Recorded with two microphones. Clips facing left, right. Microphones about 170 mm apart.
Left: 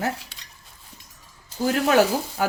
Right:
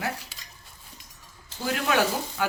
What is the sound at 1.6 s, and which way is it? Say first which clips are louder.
Speech: left 6 dB; 40° left (ahead or behind).